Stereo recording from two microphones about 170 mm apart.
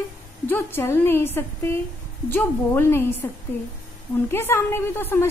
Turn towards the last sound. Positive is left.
turn(degrees=15)  # may be behind; listen again after turning